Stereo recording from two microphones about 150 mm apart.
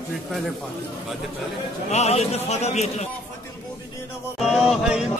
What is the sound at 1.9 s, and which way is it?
A man's voice, 45° left (ahead or behind).